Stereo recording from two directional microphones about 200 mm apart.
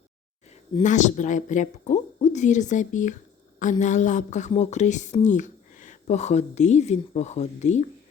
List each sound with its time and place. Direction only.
0.8 s a woman's voice: 40° left (ahead or behind)